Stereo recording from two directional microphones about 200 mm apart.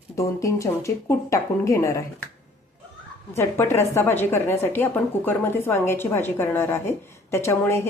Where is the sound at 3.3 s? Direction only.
10° left (ahead or behind).